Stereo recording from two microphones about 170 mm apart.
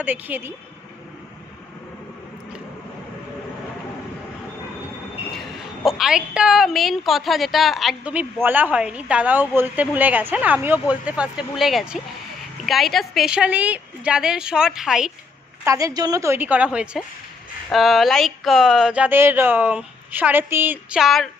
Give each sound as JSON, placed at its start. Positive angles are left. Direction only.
{"t": 0.0, "sound": "a woman's voice", "side_deg": -10}
{"t": 6.0, "sound": "a woman's voice", "side_deg": -5}
{"t": 15.6, "sound": "a woman's voice", "side_deg": -20}